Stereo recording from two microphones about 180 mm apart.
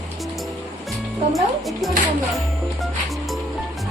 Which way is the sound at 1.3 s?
Centre (ahead or behind).